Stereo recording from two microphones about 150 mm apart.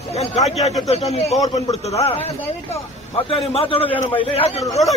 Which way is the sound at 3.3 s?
40° left (ahead or behind).